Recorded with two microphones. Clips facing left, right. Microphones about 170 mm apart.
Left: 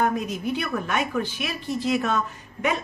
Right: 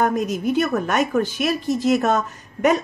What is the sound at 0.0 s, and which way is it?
A woman's voice, 45° right (ahead or behind).